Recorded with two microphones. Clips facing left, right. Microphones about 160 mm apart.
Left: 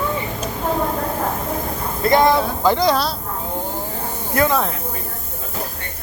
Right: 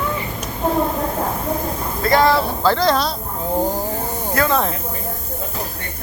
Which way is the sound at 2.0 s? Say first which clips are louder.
Left 1 dB; 20° left (ahead or behind).